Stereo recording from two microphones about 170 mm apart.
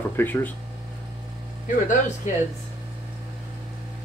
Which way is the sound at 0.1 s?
10° left (ahead or behind).